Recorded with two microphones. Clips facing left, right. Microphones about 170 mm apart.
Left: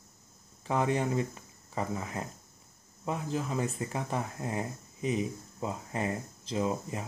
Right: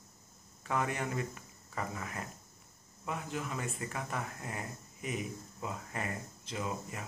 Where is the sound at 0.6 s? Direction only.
25° left (ahead or behind).